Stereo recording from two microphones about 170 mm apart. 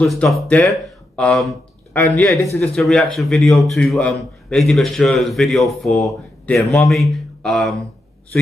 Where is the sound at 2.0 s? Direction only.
20° left (ahead or behind).